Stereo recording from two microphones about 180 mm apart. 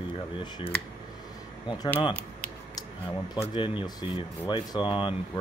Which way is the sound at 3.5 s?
25° left (ahead or behind).